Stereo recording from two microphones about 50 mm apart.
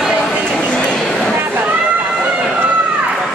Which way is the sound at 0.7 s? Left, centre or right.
Centre.